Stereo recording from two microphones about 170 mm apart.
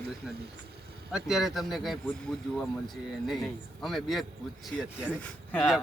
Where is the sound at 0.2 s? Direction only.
Centre (ahead or behind).